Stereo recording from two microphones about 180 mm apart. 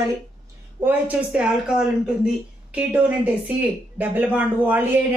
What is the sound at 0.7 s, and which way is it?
A woman's voice, 10° right (ahead or behind).